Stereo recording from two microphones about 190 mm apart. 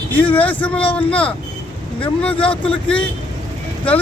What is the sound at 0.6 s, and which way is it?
Speech, 5° left (ahead or behind).